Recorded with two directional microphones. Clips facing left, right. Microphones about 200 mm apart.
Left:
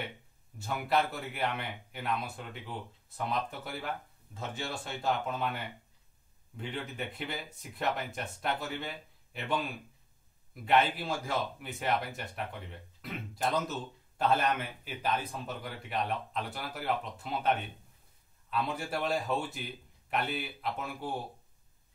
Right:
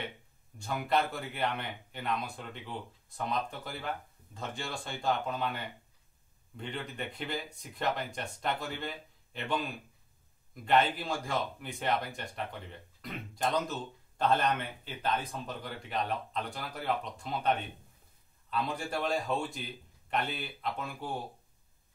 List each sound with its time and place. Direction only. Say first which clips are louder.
0.6 s speech: even; 5° left (ahead or behind)